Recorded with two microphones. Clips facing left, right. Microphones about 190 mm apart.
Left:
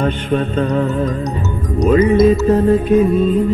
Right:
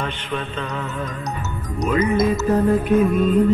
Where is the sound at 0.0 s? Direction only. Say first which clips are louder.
Left 10 dB; 40° left (ahead or behind).